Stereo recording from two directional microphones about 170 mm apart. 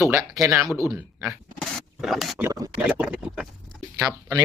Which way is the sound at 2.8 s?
5° right (ahead or behind).